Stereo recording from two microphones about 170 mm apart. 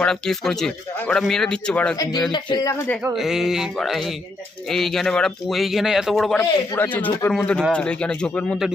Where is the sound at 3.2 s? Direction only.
Centre (ahead or behind).